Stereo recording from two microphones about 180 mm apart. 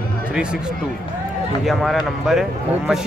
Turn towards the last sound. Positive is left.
turn(degrees=0)  # may be behind; listen again after turning